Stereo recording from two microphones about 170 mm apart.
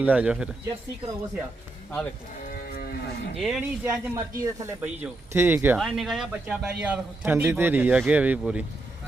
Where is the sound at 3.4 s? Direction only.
5° right (ahead or behind).